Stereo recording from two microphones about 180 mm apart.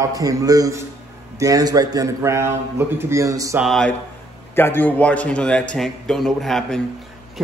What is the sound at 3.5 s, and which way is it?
A man's voice, centre (ahead or behind).